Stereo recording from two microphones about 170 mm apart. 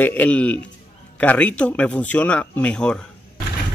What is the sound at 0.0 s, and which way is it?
Speech, 10° left (ahead or behind).